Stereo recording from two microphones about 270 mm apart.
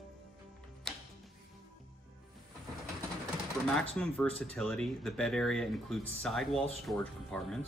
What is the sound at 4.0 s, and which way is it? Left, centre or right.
Speech, centre.